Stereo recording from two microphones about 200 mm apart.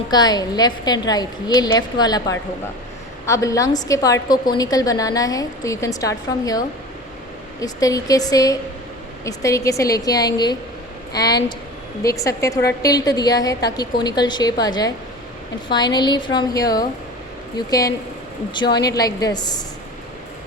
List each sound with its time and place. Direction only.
0.1 s a woman's voice: 20° left (ahead or behind)
18.5 s a woman's voice: 20° left (ahead or behind)